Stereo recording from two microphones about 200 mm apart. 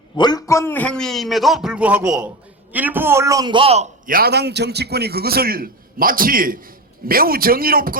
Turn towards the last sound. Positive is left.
turn(degrees=-45)  # may be behind; listen again after turning